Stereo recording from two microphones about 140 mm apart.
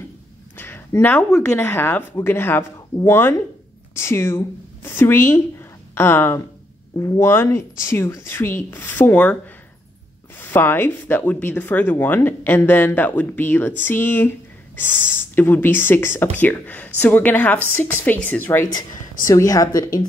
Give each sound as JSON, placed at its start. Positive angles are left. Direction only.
{"t": 0.6, "sound": "a woman's voice", "side_deg": 15}
{"t": 19.2, "sound": "a woman's voice", "side_deg": 25}